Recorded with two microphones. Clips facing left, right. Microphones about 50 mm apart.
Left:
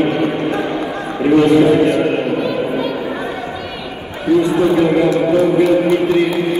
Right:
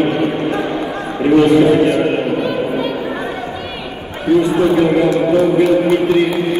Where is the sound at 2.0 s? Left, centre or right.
Centre.